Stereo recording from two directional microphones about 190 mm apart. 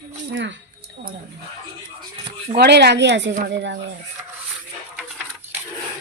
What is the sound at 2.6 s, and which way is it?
A woman's voice, 60° right (ahead or behind).